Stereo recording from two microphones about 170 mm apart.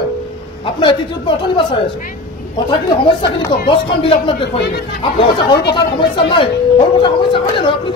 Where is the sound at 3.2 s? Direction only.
30° left (ahead or behind).